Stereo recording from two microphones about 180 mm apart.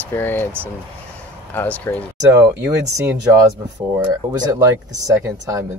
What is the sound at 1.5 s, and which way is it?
Speech, 10° left (ahead or behind).